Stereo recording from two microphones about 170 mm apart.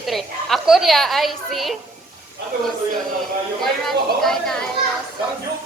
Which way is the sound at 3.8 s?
Centre (ahead or behind).